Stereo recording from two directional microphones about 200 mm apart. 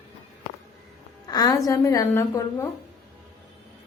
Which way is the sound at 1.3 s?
20° left (ahead or behind).